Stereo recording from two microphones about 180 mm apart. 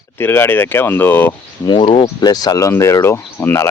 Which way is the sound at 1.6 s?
25° left (ahead or behind).